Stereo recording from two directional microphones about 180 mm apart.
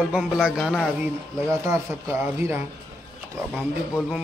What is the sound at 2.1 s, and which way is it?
Speech, 15° right (ahead or behind).